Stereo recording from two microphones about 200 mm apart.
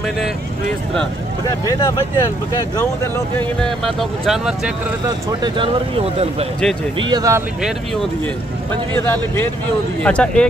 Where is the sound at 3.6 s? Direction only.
Centre (ahead or behind).